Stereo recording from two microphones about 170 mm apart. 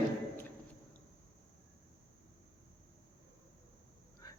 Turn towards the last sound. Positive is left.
turn(degrees=20)  # may be behind; listen again after turning